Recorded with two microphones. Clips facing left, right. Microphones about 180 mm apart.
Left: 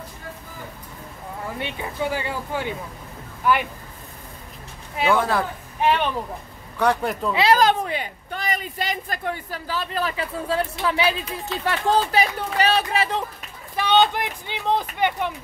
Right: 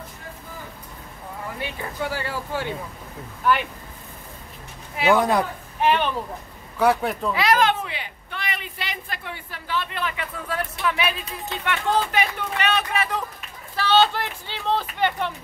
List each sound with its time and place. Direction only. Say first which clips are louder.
1.6 s speech: left 2 dB; 15° left (ahead or behind)
5.0 s speech: right 2 dB; 20° right (ahead or behind)
6.8 s a man's voice: right 1 dB; 5° right (ahead or behind)
7.3 s speech: left 3 dB; 30° left (ahead or behind)
13.7 s speech: left 1 dB; 15° left (ahead or behind)